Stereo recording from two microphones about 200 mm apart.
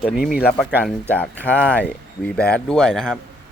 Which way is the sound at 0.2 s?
50° left (ahead or behind).